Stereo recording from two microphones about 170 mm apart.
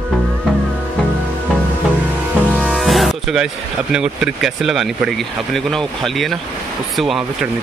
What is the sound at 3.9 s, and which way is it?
Speech, 5° right (ahead or behind).